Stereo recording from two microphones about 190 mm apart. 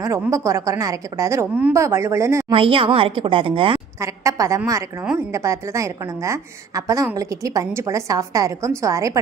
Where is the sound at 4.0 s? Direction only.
15° right (ahead or behind).